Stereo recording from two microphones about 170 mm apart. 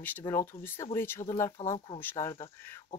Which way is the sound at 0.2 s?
15° left (ahead or behind).